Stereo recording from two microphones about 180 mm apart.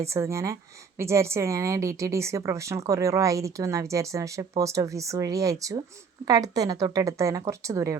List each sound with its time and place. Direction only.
0.0 s a woman's voice: 15° right (ahead or behind)